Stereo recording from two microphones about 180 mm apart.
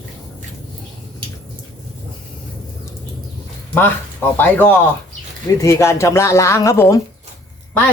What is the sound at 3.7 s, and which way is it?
Speech, 10° left (ahead or behind).